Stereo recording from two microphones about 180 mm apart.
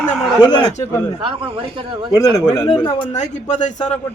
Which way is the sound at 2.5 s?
25° left (ahead or behind).